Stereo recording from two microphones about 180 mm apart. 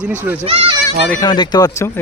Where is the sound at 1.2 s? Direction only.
25° left (ahead or behind).